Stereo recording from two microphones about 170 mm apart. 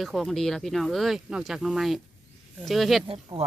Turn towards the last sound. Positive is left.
turn(degrees=-35)  # may be behind; listen again after turning